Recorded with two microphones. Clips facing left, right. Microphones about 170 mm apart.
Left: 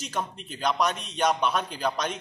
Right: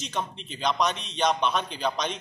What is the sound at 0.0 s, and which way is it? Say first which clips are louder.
A man's voice: even; 10° left (ahead or behind).